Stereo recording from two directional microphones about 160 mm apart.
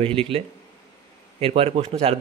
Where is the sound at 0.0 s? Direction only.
35° right (ahead or behind).